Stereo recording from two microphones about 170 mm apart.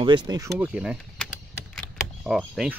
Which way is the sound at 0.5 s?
5° right (ahead or behind).